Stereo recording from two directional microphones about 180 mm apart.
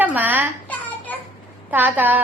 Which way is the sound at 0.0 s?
10° right (ahead or behind).